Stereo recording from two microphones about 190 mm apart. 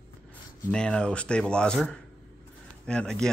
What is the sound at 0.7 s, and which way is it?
Speech, 5° left (ahead or behind).